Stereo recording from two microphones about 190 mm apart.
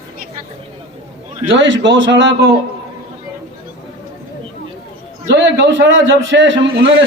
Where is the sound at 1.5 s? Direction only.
80° right.